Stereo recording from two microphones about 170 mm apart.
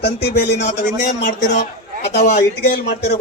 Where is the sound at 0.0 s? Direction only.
75° left (ahead or behind).